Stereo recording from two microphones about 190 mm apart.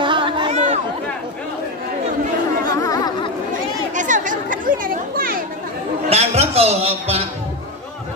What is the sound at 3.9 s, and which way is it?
Speech, 40° right (ahead or behind).